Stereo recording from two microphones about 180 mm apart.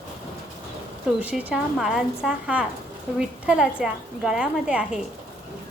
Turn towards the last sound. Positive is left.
turn(degrees=-5)  # may be behind; listen again after turning